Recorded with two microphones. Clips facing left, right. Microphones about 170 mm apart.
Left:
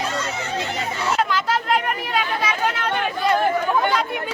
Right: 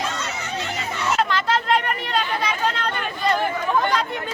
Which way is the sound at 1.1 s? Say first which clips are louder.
Right 1 dB; centre (ahead or behind).